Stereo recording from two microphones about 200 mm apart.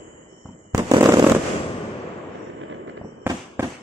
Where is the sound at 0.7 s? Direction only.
20° right (ahead or behind).